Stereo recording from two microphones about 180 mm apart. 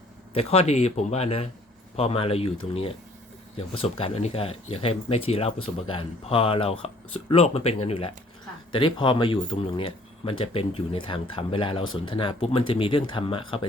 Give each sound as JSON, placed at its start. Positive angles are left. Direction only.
{"t": 0.3, "sound": "speech", "side_deg": 35}